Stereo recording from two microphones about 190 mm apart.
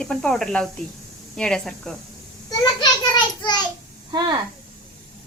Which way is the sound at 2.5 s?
20° left (ahead or behind).